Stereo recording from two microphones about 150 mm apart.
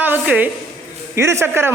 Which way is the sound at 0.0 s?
10° right (ahead or behind).